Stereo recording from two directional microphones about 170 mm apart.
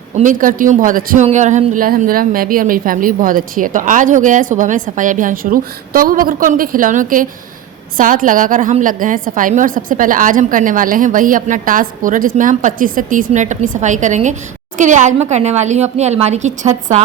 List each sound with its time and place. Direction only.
0.2 s a man's voice: 50° right (ahead or behind)